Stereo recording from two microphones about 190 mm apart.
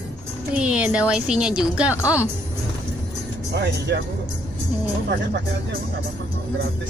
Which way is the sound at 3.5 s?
65° right (ahead or behind).